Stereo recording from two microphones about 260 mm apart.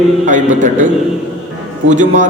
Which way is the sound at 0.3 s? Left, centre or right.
Right.